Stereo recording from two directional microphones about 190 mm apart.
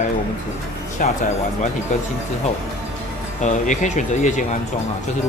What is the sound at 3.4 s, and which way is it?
Speech, 40° left (ahead or behind).